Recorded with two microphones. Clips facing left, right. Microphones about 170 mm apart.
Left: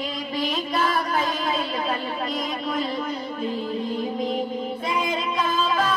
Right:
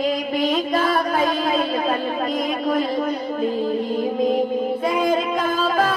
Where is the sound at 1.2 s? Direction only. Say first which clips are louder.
Right 6 dB; 45° right (ahead or behind).